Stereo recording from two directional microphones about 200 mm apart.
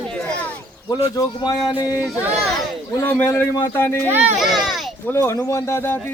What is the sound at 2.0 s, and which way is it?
Speech, 5° right (ahead or behind).